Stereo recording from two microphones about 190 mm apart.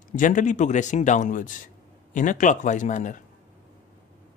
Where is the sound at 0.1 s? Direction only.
40° left (ahead or behind).